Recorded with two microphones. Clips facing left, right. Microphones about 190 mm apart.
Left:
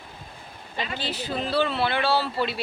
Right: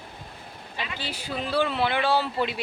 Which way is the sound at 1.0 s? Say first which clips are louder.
Left 3 dB; 10° right (ahead or behind).